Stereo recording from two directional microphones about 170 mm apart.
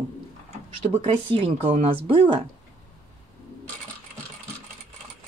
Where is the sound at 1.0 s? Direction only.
35° right (ahead or behind).